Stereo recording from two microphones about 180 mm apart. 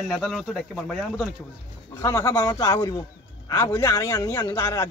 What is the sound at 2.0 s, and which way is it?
A man's voice, 15° left (ahead or behind).